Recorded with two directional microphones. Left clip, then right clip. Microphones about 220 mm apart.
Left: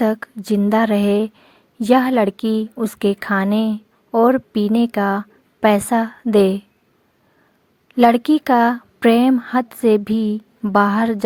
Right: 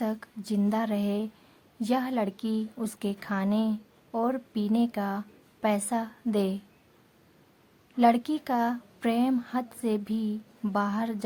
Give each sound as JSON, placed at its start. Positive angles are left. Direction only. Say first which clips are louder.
{"t": 0.0, "sound": "a woman's voice", "louder": "left 14 dB", "side_deg": 30}
{"t": 7.9, "sound": "a woman's voice", "louder": "left 10 dB", "side_deg": 35}